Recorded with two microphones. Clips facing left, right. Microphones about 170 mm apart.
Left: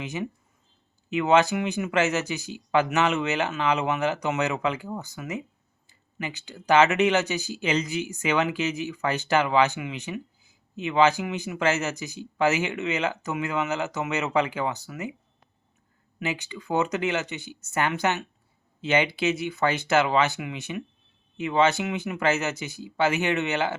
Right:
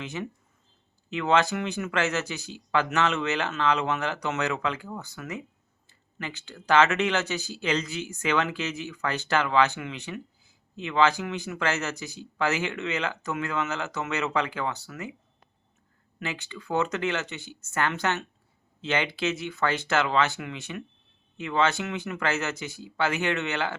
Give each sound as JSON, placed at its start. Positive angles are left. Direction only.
{"t": 0.0, "sound": "speech", "side_deg": 15}
{"t": 16.2, "sound": "speech", "side_deg": 15}